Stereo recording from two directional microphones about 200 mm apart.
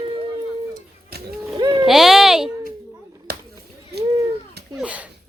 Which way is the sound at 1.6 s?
20° right (ahead or behind).